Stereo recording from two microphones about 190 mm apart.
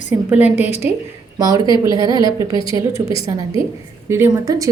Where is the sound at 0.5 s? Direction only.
35° left (ahead or behind).